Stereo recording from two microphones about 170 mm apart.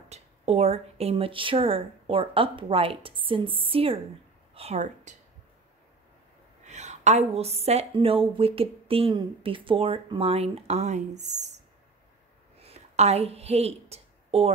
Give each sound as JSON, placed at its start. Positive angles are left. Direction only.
{"t": 0.1, "sound": "a woman's voice", "side_deg": -40}
{"t": 6.6, "sound": "a woman's voice", "side_deg": -45}
{"t": 12.5, "sound": "a sound", "side_deg": -35}